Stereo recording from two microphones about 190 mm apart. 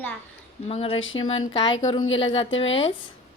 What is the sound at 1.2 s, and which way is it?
Speech, 25° left (ahead or behind).